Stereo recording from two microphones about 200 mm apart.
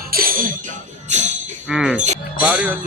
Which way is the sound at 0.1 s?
45° right (ahead or behind).